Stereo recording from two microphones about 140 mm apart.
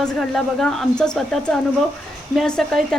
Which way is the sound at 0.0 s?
5° left (ahead or behind).